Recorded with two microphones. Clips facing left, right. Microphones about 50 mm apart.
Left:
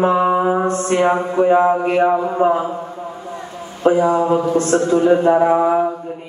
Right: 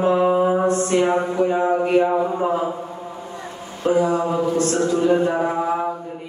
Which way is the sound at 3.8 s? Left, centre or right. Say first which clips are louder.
Left 4 dB; left.